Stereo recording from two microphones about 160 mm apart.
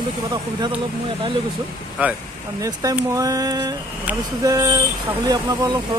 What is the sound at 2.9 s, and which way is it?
Speech, 20° right (ahead or behind).